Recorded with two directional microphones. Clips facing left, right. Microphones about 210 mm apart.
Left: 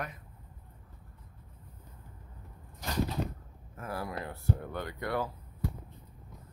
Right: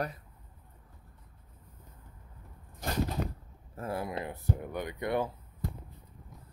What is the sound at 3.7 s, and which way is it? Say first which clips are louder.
Speech: right 3 dB; 25° right (ahead or behind).